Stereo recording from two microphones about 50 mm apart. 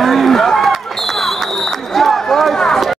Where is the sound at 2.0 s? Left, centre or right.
Centre.